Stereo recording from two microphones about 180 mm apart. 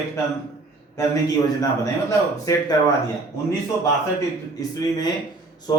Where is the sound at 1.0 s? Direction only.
20° left (ahead or behind).